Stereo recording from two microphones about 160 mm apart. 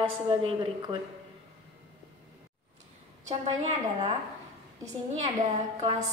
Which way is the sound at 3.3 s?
45° right (ahead or behind).